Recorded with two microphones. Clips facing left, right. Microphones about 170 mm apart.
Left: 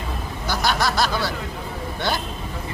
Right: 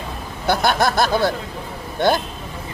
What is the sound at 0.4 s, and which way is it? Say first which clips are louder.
Speech: right 5 dB; 55° right (ahead or behind).